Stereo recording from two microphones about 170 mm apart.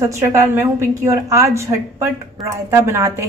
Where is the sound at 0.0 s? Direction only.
15° right (ahead or behind).